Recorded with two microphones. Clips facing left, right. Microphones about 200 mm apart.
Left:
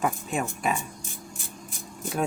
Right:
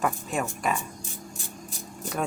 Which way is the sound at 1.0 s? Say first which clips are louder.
Right 1 dB; 40° right (ahead or behind).